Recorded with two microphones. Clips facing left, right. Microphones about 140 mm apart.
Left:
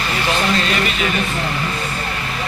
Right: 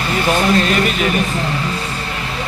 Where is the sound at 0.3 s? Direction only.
45° right (ahead or behind).